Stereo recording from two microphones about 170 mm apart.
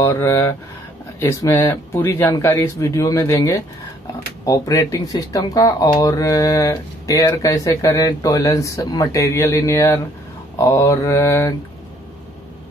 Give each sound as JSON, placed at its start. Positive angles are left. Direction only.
{"t": 0.0, "sound": "speech", "side_deg": 15}